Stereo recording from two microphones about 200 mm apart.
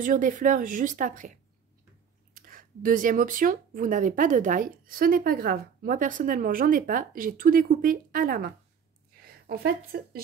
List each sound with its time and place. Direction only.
0.0 s a woman's voice: 40° right (ahead or behind)